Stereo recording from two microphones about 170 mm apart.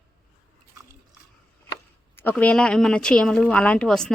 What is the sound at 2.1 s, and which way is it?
Speech, 10° left (ahead or behind).